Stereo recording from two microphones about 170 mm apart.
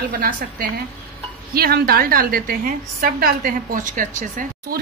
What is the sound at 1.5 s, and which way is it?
A woman's voice, 60° right (ahead or behind).